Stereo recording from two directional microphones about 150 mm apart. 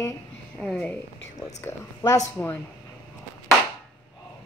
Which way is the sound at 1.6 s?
25° left (ahead or behind).